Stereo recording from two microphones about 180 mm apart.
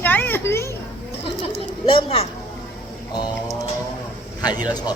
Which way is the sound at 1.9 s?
30° left (ahead or behind).